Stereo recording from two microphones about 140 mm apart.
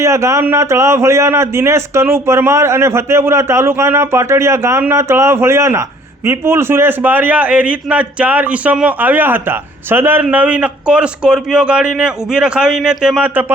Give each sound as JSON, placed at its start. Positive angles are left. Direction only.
{"t": 0.0, "sound": "a man's voice", "side_deg": -20}